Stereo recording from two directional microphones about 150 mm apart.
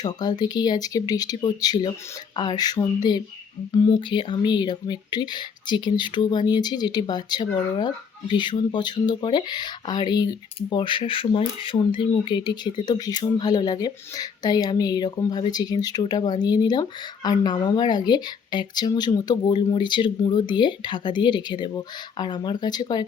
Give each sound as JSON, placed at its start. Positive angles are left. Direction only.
{"t": 0.0, "sound": "speech", "side_deg": 25}